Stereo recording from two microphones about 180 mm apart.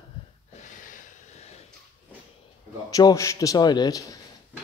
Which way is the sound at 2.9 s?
20° left (ahead or behind).